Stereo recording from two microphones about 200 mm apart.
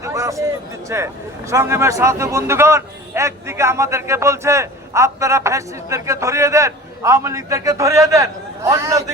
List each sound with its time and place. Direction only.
0.0 s speech: 15° right (ahead or behind)